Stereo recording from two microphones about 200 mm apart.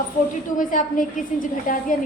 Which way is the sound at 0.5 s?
40° left (ahead or behind).